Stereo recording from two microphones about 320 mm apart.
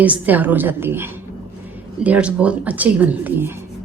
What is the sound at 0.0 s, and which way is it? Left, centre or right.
Speech, centre.